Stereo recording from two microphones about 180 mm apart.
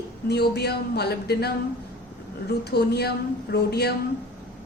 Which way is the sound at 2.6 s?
65° left (ahead or behind).